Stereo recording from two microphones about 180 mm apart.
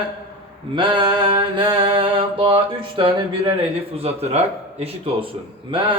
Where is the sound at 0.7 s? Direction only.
25° right (ahead or behind).